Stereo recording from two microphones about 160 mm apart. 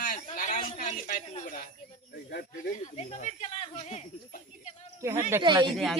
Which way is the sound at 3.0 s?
45° left (ahead or behind).